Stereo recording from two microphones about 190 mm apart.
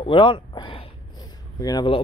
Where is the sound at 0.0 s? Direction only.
25° left (ahead or behind).